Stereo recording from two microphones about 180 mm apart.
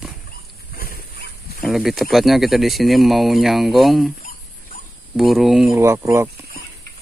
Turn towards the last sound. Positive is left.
turn(degrees=-15)  # may be behind; listen again after turning